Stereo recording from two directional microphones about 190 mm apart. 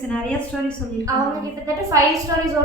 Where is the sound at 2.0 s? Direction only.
15° right (ahead or behind).